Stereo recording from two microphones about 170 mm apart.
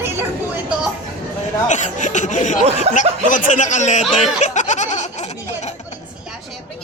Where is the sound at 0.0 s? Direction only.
10° right (ahead or behind).